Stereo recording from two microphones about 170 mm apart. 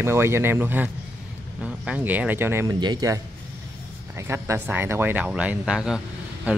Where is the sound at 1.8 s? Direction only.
10° right (ahead or behind).